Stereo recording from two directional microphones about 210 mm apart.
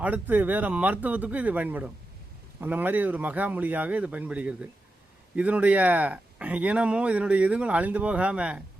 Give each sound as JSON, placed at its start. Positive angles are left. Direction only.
{"t": 0.0, "sound": "speech", "side_deg": -10}